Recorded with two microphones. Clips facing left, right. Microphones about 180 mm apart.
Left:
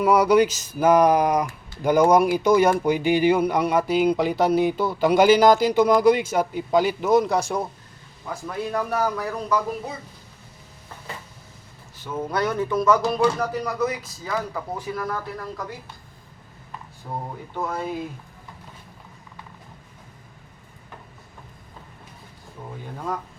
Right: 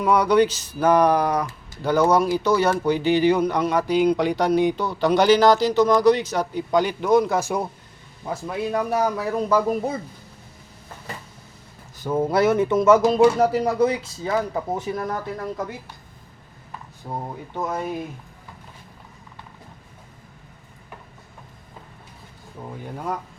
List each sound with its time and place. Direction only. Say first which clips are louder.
0.0 s speech: left 1 dB; 10° left (ahead or behind)
8.2 s speech: right 3 dB; 20° right (ahead or behind)
11.9 s speech: right 7 dB; 40° right (ahead or behind)
12.2 s speech: right 5 dB; 25° right (ahead or behind)
17.1 s speech: right 1 dB; 15° right (ahead or behind)